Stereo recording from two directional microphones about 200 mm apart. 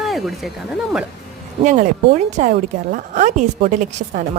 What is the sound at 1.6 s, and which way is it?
A woman's voice, 40° right (ahead or behind).